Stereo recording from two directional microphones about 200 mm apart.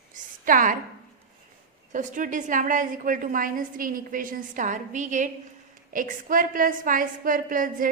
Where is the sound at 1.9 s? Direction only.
40° right (ahead or behind).